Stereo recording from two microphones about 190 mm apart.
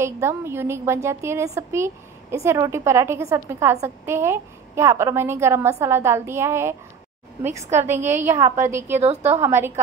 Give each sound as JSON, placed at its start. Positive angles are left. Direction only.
{"t": 0.0, "sound": "a woman's voice", "side_deg": -15}
{"t": 9.0, "sound": "a woman's voice", "side_deg": -35}
{"t": 9.4, "sound": "a woman's voice", "side_deg": -15}